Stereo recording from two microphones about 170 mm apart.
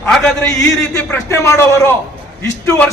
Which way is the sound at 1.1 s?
15° left (ahead or behind).